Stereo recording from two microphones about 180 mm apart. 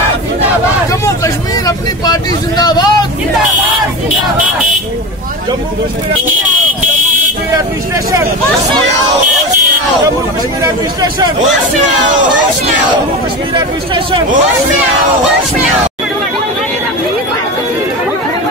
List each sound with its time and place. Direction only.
2.0 s speech: 20° left (ahead or behind)
10.6 s speech: 20° right (ahead or behind)
13.6 s speech: 30° right (ahead or behind)